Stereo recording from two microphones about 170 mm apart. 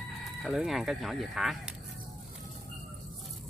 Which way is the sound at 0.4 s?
5° right (ahead or behind).